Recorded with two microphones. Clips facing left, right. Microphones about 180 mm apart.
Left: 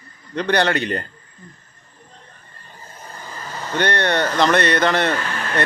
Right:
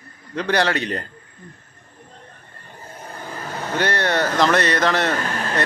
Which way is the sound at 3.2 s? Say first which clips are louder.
Right 3 dB; 60° right (ahead or behind).